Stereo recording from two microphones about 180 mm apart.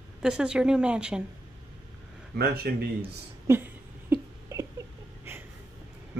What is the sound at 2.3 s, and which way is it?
Speech, 60° right (ahead or behind).